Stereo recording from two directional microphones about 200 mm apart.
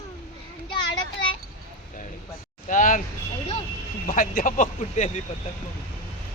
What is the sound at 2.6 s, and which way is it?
Speech, 40° left (ahead or behind).